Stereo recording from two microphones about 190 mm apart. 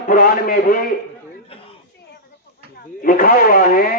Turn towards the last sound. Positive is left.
turn(degrees=50)  # may be behind; listen again after turning